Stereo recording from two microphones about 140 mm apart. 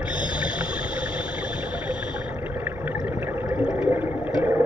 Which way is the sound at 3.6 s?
5° right (ahead or behind).